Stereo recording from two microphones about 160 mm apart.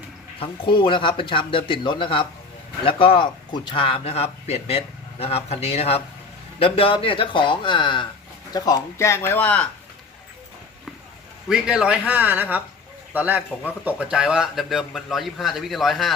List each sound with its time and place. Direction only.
0.3 s a man's voice: 35° left (ahead or behind); by 9.6 s 10° left (ahead or behind)
11.4 s a man's voice: 5° right (ahead or behind)